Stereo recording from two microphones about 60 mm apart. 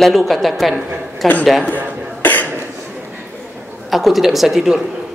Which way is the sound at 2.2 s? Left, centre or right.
Left.